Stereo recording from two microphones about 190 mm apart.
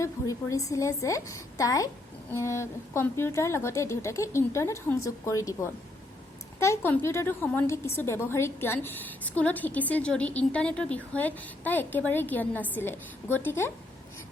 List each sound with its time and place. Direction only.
0.0 s a woman's voice: 15° left (ahead or behind)